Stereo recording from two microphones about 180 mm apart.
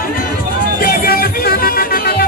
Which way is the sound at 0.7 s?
55° left (ahead or behind).